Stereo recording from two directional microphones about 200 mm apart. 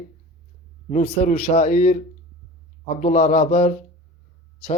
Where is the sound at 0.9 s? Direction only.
35° left (ahead or behind).